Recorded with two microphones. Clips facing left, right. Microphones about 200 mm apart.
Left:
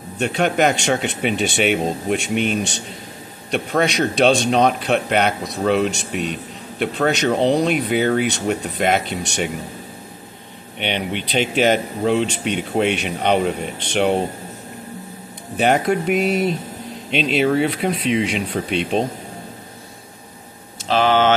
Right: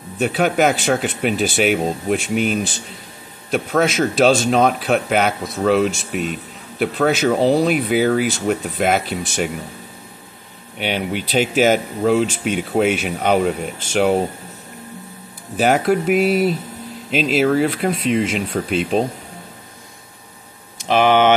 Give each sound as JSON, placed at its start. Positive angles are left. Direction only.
{"t": 0.2, "sound": "a man's voice", "side_deg": -5}
{"t": 10.8, "sound": "a man's voice", "side_deg": -5}
{"t": 15.5, "sound": "a man's voice", "side_deg": 0}
{"t": 20.9, "sound": "speech", "side_deg": -15}